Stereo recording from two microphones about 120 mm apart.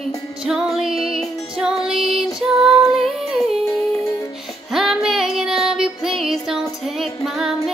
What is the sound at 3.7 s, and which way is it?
Music, 30° left (ahead or behind).